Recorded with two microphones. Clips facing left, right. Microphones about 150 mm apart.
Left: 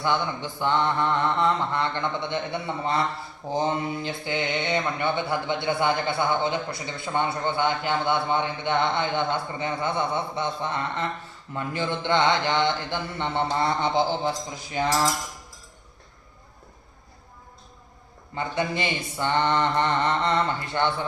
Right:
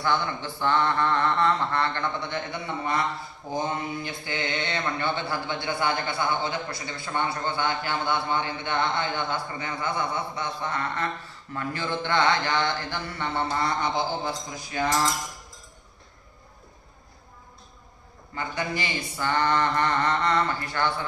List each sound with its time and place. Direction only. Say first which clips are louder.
0.0 s mantra: left 1 dB; 20° left (ahead or behind)
18.3 s mantra: left 3 dB; 25° left (ahead or behind)